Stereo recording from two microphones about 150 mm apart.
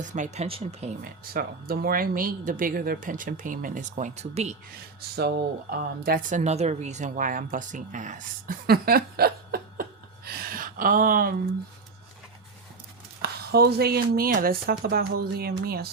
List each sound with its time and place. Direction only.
0.0 s speech: 55° right (ahead or behind)
0.4 s speech: 40° right (ahead or behind)
1.3 s speech: 80° right; by 4.5 s 50° right (ahead or behind)
4.9 s speech: 90° right
6.0 s speech: 75° right (ahead or behind); by 9.8 s 90° right
10.2 s a sound: 85° right; by 11.3 s 70° right (ahead or behind)
13.2 s speech: 90° right